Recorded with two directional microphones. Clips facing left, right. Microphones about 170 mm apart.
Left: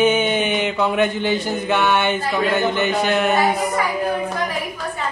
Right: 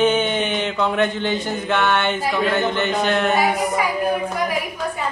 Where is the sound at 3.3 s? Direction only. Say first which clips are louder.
Even; 10° right (ahead or behind).